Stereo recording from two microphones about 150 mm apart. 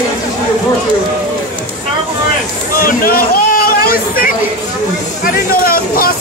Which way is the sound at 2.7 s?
75° left (ahead or behind).